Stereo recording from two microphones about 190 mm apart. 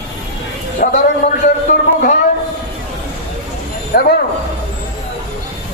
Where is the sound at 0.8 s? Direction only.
45° left (ahead or behind).